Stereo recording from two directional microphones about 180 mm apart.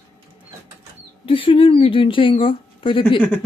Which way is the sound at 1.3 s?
30° left (ahead or behind).